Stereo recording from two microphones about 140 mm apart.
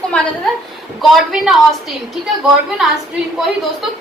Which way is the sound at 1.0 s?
Centre (ahead or behind).